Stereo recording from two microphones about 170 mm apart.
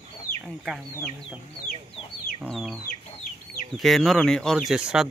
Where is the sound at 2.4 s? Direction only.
Centre (ahead or behind).